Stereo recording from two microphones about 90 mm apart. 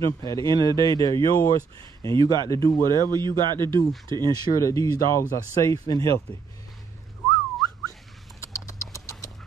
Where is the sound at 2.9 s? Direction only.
50° right (ahead or behind).